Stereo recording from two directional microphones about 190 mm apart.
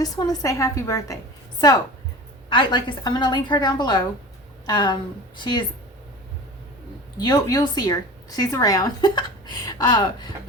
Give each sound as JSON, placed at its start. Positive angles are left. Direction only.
{"t": 0.0, "sound": "a woman's voice", "side_deg": 20}
{"t": 2.5, "sound": "a woman's voice", "side_deg": 25}
{"t": 7.2, "sound": "a woman's voice", "side_deg": 20}